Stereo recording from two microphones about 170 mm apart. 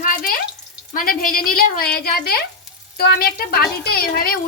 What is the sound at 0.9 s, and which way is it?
A woman's voice, 55° left (ahead or behind).